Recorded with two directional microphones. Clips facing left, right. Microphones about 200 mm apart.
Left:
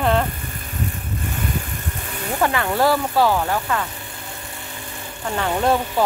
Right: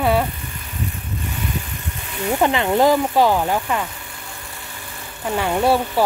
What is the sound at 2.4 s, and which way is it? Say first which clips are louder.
Speech: right 3 dB; 20° right (ahead or behind).